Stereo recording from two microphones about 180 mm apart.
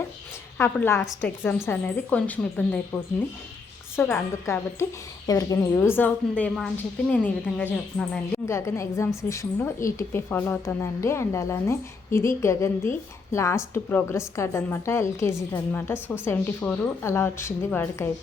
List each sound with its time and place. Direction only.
0.6 s a woman's voice: 15° left (ahead or behind)